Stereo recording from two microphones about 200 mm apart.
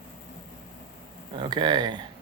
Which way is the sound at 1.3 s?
25° right (ahead or behind).